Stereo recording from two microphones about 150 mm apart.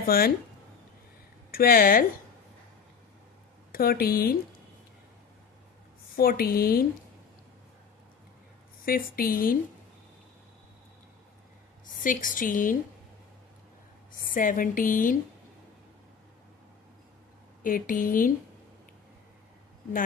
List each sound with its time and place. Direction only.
0.0 s speech: 80° left
1.5 s a woman's voice: 80° left
3.7 s a woman's voice: 85° left
6.1 s a woman's voice: 80° left
8.8 s a woman's voice: 75° left (ahead or behind)
11.8 s a woman's voice: 60° left (ahead or behind)
14.1 s a woman's voice: 65° left (ahead or behind)
17.6 s a woman's voice: 65° left (ahead or behind)